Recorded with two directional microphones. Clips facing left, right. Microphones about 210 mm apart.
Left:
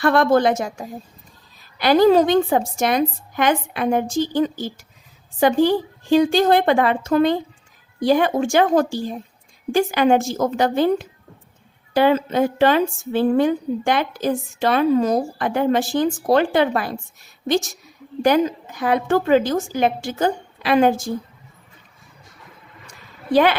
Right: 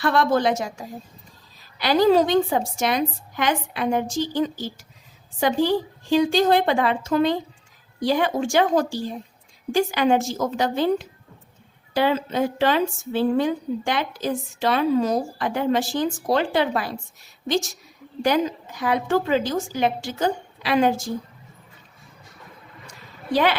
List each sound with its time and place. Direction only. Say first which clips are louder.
0.0 s a woman's voice: left 4 dB; 55° left (ahead or behind)
1.8 s a woman's voice: left 3 dB; 50° left (ahead or behind)
18.8 s a woman's voice: left 3 dB; 55° left (ahead or behind)
23.3 s a woman's voice: left 5 dB; 50° left (ahead or behind)